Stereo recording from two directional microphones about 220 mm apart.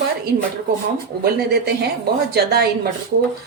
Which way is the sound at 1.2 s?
45° right (ahead or behind).